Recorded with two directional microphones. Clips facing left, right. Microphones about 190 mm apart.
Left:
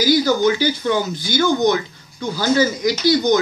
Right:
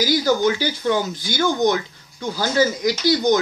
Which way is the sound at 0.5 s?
45° right (ahead or behind).